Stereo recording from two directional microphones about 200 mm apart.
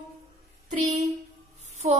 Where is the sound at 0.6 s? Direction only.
40° right (ahead or behind).